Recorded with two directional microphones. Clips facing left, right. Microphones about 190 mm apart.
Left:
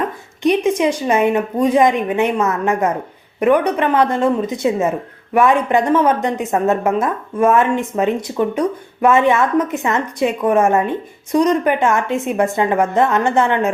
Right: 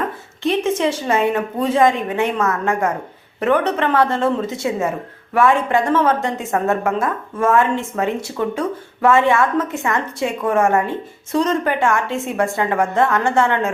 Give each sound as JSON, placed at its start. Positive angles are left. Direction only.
{"t": 0.4, "sound": "a woman's voice", "side_deg": 15}